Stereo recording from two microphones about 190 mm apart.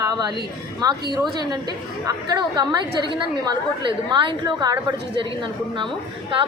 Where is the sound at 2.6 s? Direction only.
20° right (ahead or behind).